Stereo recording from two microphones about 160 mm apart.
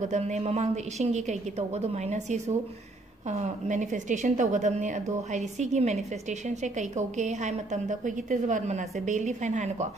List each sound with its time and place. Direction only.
0.0 s a woman's voice: 45° right (ahead or behind)